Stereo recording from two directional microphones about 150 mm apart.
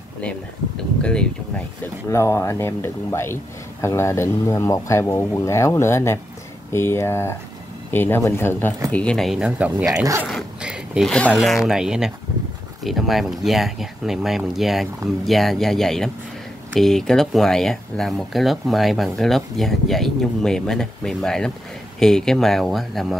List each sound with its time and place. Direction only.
1.0 s speech: 5° left (ahead or behind)
2.0 s speech: 20° left (ahead or behind); by 9.8 s 5° right (ahead or behind)
10.2 s a sound: 5° right (ahead or behind)
11.1 s speech: 5° left (ahead or behind)